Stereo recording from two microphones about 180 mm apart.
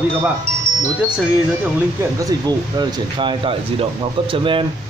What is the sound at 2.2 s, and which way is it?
Speech, 20° right (ahead or behind).